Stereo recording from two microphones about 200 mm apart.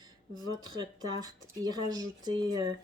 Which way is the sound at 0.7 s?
20° right (ahead or behind).